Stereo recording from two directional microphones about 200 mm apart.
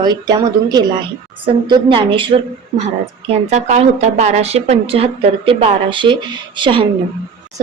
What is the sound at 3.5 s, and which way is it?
A woman's voice, 35° right (ahead or behind).